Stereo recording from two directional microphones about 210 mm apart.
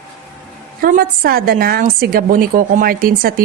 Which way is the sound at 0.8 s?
45° right (ahead or behind).